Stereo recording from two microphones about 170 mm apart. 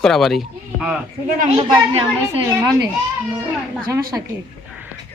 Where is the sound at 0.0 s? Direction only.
Centre (ahead or behind).